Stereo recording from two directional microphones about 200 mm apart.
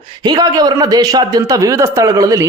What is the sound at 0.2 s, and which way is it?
A man's voice, 20° right (ahead or behind).